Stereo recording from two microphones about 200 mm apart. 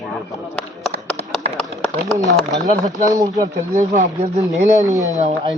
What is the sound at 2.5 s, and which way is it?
Speech, 20° right (ahead or behind).